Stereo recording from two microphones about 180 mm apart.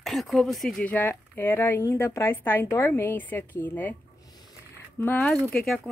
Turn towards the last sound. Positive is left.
turn(degrees=0)  # may be behind; listen again after turning